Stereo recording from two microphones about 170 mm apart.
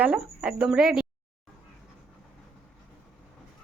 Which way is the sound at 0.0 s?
5° right (ahead or behind).